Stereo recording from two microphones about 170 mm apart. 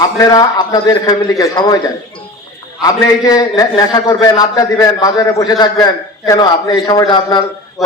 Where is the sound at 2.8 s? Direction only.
20° left (ahead or behind).